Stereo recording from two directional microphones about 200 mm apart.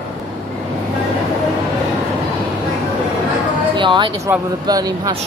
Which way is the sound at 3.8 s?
25° right (ahead or behind).